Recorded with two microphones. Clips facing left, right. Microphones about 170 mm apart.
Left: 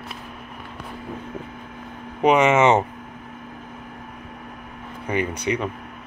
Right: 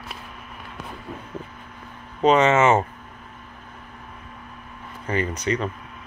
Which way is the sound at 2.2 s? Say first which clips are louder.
Left 1 dB; 15° left (ahead or behind).